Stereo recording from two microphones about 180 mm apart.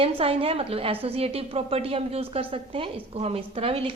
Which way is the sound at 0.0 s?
30° right (ahead or behind).